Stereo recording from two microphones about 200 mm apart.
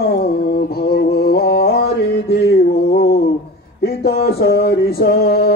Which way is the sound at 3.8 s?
55° left (ahead or behind).